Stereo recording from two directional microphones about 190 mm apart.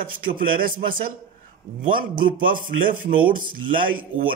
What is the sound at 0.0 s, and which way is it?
A man's voice, 50° right (ahead or behind).